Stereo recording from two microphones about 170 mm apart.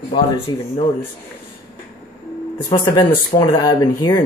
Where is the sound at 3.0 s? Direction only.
30° left (ahead or behind).